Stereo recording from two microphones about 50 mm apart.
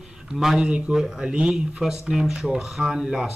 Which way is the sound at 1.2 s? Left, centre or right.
Centre.